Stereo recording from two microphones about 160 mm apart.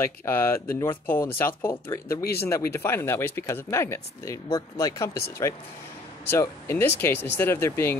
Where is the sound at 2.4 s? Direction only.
15° left (ahead or behind).